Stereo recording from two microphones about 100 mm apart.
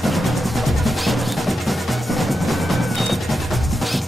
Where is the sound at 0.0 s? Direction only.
Centre (ahead or behind).